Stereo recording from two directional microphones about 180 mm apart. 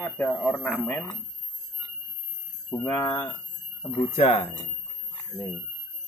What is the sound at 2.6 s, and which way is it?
Speech, 15° left (ahead or behind).